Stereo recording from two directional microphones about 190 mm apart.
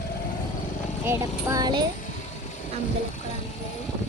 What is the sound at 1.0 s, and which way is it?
Speech, 15° right (ahead or behind).